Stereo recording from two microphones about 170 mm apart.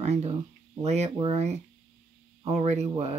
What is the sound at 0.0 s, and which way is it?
Speech, 40° right (ahead or behind).